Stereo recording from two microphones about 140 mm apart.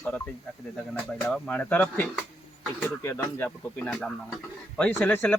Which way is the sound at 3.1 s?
15° left (ahead or behind).